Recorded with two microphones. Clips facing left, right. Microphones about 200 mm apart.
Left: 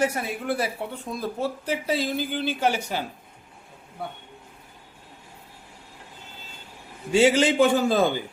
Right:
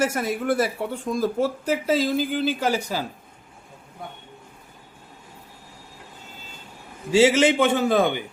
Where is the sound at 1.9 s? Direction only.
90° right.